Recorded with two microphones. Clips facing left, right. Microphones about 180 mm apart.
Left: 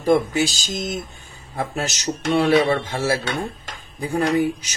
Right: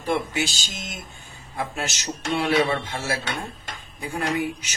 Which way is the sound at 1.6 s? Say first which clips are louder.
Left 4 dB; 40° left (ahead or behind).